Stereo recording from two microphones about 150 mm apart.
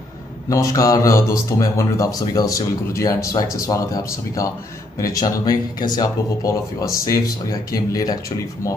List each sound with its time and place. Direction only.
0.5 s speech: 20° left (ahead or behind)